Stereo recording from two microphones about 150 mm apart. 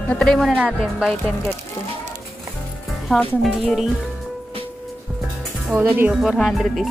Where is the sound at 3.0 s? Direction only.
Centre (ahead or behind).